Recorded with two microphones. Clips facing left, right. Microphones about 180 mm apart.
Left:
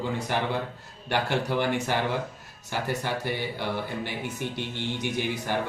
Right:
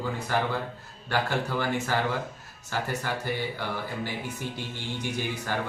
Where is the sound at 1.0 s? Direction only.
20° left (ahead or behind).